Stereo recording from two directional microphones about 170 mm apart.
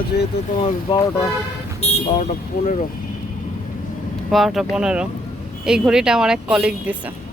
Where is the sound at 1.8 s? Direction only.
40° left (ahead or behind).